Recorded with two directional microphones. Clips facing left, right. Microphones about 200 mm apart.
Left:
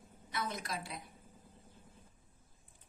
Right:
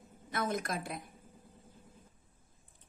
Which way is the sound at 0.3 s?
50° right (ahead or behind).